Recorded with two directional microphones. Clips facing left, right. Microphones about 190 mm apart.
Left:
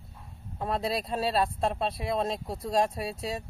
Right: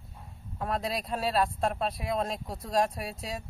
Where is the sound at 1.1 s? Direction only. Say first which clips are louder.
Right 1 dB; 30° left (ahead or behind).